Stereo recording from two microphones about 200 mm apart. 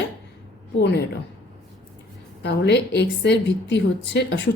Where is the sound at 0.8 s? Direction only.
55° left (ahead or behind).